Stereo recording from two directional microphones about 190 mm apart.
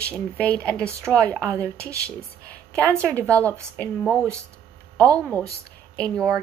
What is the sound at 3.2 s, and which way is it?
Speech, 15° right (ahead or behind).